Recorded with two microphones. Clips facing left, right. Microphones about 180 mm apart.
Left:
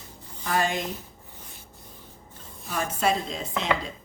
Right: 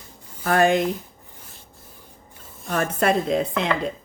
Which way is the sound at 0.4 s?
60° right (ahead or behind).